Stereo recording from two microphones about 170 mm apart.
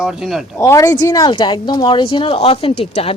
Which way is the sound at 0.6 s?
15° left (ahead or behind).